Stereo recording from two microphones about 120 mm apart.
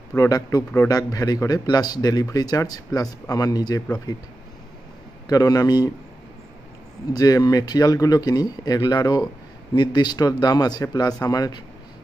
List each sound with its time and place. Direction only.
0.1 s a man's voice: 25° left (ahead or behind)
5.2 s a man's voice: 30° left (ahead or behind)
7.1 s a man's voice: 30° left (ahead or behind)